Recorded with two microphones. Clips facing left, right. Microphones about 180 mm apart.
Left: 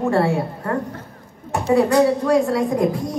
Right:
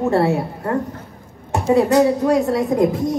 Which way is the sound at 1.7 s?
20° right (ahead or behind).